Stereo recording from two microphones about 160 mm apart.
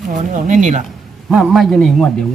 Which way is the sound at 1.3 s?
Centre (ahead or behind).